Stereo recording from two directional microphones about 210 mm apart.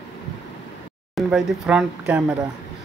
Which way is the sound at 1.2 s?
Centre (ahead or behind).